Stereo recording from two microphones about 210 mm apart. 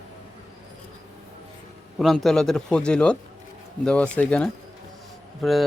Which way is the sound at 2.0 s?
Centre (ahead or behind).